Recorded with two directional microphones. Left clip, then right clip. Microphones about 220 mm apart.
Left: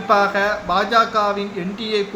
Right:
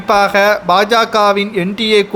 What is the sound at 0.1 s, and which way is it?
Speech, 50° right (ahead or behind).